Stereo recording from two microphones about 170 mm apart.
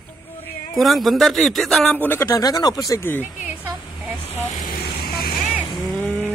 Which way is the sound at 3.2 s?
10° right (ahead or behind).